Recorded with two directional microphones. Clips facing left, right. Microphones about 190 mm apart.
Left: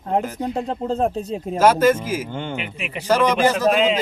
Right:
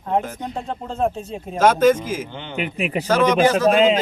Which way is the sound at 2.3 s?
50° left (ahead or behind).